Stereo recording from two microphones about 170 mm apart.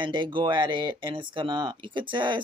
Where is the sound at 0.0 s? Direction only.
25° right (ahead or behind).